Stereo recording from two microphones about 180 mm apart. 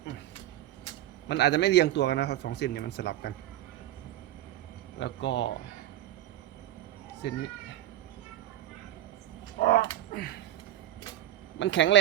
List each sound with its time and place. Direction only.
1.3 s a man's voice: 70° left (ahead or behind)
4.9 s a man's voice: 85° left
7.2 s a man's voice: 70° left (ahead or behind)
9.6 s a sound: 50° left (ahead or behind)
11.6 s speech: 90° left